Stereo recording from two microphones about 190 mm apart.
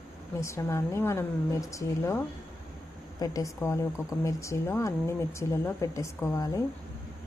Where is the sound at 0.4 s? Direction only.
15° left (ahead or behind).